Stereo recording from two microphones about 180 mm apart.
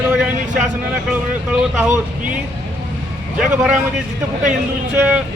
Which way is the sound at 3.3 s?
5° right (ahead or behind).